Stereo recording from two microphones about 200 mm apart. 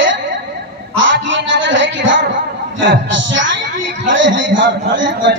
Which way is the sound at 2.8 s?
70° right (ahead or behind).